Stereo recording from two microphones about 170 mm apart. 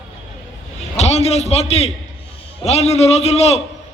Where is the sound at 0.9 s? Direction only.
40° left (ahead or behind).